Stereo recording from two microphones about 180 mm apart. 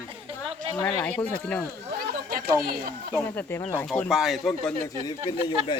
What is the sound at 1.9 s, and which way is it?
Speech, 55° right (ahead or behind).